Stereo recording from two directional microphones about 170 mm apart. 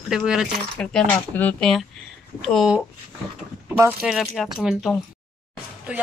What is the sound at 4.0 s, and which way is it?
Speech, centre (ahead or behind).